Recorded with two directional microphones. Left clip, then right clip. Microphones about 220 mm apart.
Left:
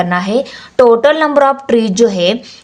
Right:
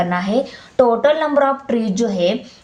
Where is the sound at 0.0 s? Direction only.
35° left (ahead or behind).